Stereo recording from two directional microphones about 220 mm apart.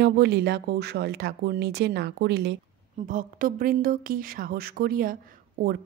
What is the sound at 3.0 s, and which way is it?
A woman's voice, 40° right (ahead or behind).